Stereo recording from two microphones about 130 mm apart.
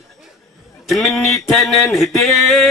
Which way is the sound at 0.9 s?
Centre (ahead or behind).